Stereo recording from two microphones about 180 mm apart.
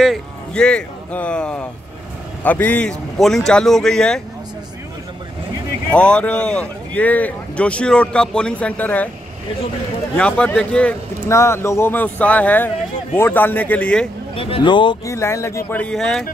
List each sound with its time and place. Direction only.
0.0 s a man's voice: 5° left (ahead or behind)
5.9 s speech: 5° left (ahead or behind)
10.1 s speech: 5° left (ahead or behind)
14.3 s speech: 30° left (ahead or behind); by 16.3 s 5° left (ahead or behind)